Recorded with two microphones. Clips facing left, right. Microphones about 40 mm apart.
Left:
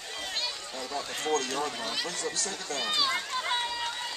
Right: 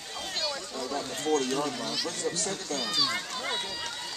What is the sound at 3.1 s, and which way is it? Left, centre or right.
Speech, centre.